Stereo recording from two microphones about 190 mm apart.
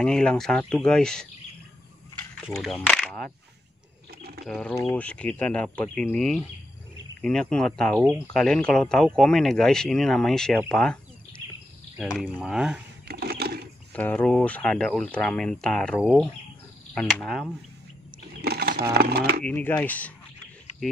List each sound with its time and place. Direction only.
0.0 s speech: 5° left (ahead or behind)
2.6 s speech: centre (ahead or behind)
4.5 s speech: 5° left (ahead or behind)
12.0 s speech: 5° right (ahead or behind)
13.1 s a sound: 55° right (ahead or behind)
13.9 s speech: 10° left (ahead or behind)
17.1 s speech: centre (ahead or behind)
18.4 s bird: 55° right (ahead or behind)
18.9 s speech: 55° right (ahead or behind)
19.4 s speech: 10° left (ahead or behind)